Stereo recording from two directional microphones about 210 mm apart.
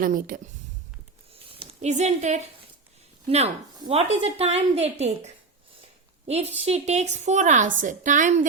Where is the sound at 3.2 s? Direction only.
30° right (ahead or behind).